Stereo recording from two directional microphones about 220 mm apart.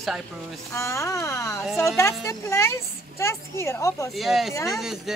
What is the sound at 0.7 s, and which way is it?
A woman's voice, 15° left (ahead or behind).